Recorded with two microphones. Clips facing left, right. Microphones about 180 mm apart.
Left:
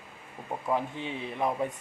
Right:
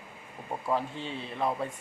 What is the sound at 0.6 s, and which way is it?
Speech, 15° left (ahead or behind).